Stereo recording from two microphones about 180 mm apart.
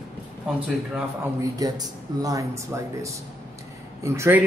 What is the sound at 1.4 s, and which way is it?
Speech, 20° right (ahead or behind).